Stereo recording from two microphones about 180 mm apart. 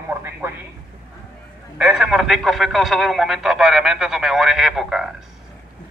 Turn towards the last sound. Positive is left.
turn(degrees=0)  # may be behind; listen again after turning